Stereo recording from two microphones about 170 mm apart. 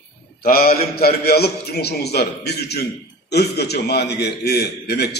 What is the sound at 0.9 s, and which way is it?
A man's voice, 65° left (ahead or behind).